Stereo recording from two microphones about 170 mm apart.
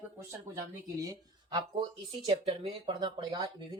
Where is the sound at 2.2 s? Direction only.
30° right (ahead or behind).